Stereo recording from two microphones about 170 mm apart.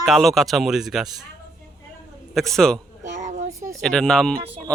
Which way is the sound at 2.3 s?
Centre (ahead or behind).